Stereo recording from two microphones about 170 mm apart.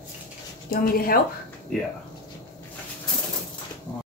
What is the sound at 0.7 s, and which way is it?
Speech, 60° left (ahead or behind).